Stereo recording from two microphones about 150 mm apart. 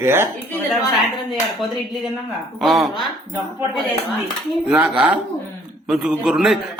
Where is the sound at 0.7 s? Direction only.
Centre (ahead or behind).